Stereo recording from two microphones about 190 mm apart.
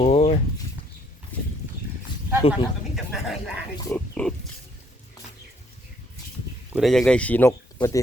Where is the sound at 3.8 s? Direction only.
10° left (ahead or behind).